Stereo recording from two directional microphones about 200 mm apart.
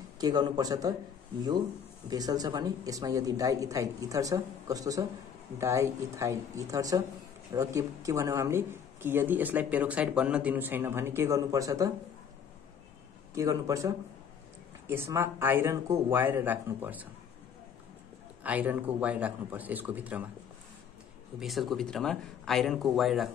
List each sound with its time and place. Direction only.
0.2 s speech: 20° right (ahead or behind)
2.0 s speech: 20° right (ahead or behind)
13.3 s speech: 15° right (ahead or behind)
18.4 s speech: 5° right (ahead or behind)
21.4 s speech: centre (ahead or behind)